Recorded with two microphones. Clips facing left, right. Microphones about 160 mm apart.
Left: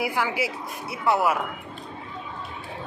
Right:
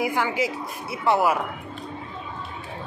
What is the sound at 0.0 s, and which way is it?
A woman's voice, 5° left (ahead or behind).